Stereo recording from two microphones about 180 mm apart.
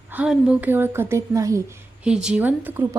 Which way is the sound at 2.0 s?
5° right (ahead or behind).